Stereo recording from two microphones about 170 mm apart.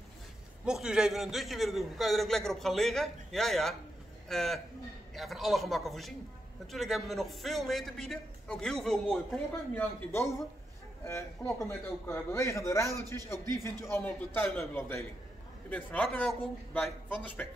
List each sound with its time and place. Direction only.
0.7 s a man's voice: 5° right (ahead or behind)